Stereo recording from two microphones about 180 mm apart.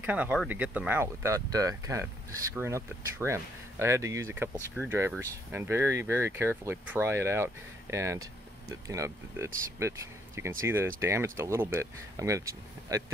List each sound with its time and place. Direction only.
0.0 s speech: 10° right (ahead or behind)